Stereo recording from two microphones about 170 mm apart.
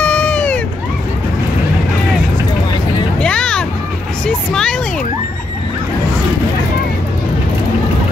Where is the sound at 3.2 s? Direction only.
5° left (ahead or behind).